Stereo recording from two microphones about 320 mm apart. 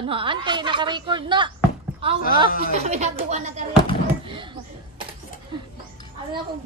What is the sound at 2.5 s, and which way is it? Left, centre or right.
Speech, left.